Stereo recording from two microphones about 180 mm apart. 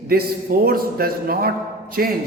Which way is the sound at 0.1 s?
60° right (ahead or behind).